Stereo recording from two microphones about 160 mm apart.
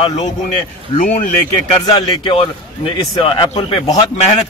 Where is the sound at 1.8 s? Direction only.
30° left (ahead or behind).